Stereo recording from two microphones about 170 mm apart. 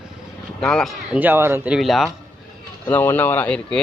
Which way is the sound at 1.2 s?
15° right (ahead or behind).